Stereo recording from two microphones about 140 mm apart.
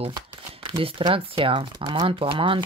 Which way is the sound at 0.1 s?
40° right (ahead or behind).